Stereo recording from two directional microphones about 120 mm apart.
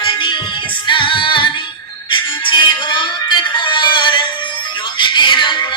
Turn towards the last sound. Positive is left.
turn(degrees=40)  # may be behind; listen again after turning